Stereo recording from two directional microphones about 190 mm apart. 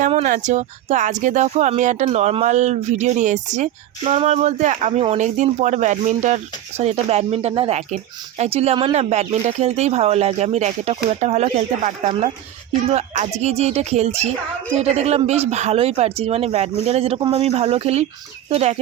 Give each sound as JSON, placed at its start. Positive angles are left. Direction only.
{"t": 0.0, "sound": "speech", "side_deg": -40}